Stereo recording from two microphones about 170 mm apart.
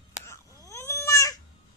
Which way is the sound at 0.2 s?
15° left (ahead or behind).